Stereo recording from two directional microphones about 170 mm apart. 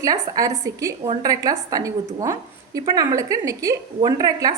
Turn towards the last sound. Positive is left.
turn(degrees=-20)  # may be behind; listen again after turning